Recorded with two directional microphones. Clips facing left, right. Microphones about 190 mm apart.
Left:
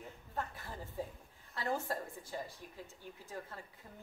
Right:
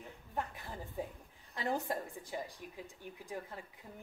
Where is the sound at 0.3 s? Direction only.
15° right (ahead or behind).